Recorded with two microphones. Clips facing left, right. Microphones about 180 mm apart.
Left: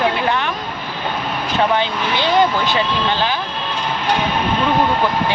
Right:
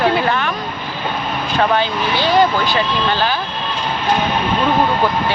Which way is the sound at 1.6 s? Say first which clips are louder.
Right 1 dB; 20° left (ahead or behind).